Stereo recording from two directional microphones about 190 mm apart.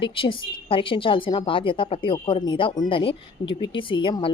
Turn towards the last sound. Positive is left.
turn(degrees=25)  # may be behind; listen again after turning